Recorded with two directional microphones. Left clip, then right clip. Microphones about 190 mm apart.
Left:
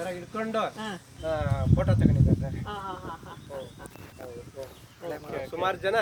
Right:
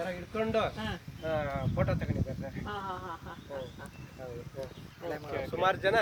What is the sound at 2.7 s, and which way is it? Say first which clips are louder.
Speech: left 1 dB; 15° right (ahead or behind).